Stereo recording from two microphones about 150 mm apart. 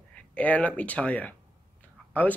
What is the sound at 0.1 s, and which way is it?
Speech, 10° left (ahead or behind).